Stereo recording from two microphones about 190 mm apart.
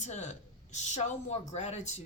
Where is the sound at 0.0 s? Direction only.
40° left (ahead or behind).